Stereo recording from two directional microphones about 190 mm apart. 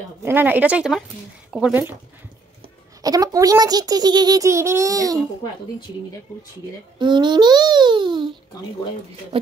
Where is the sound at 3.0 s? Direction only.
20° right (ahead or behind).